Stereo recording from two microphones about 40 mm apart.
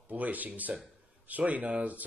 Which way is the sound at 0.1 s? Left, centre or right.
Right.